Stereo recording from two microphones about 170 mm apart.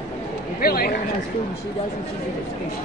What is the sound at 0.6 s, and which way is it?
Speech, 60° left (ahead or behind).